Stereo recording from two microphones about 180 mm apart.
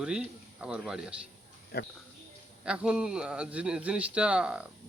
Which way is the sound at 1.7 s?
60° left (ahead or behind).